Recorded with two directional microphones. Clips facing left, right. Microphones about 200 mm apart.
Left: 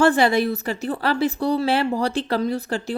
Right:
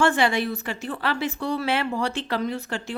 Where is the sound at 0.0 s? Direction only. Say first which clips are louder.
Left 4 dB; 40° left (ahead or behind).